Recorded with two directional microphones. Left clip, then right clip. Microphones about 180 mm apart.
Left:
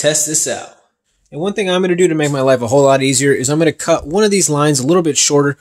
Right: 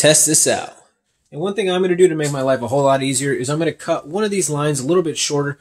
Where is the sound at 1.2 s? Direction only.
45° left (ahead or behind).